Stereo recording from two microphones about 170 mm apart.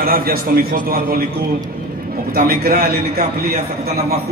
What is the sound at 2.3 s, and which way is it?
Speech, 60° right (ahead or behind).